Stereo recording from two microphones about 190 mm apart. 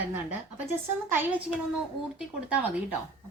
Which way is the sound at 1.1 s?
10° right (ahead or behind).